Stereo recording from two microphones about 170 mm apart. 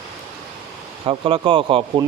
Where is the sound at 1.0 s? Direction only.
30° right (ahead or behind).